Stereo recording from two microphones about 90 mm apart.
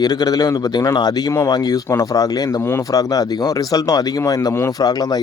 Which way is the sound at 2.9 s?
45° left (ahead or behind).